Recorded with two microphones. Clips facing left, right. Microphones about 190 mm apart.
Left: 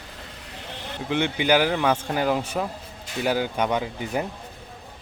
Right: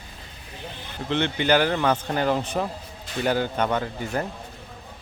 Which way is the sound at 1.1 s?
10° left (ahead or behind).